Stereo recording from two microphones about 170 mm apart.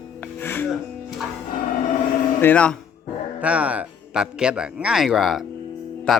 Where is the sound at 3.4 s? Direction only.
5° right (ahead or behind).